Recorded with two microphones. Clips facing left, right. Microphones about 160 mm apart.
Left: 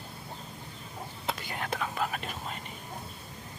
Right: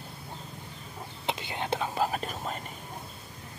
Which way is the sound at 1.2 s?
20° right (ahead or behind).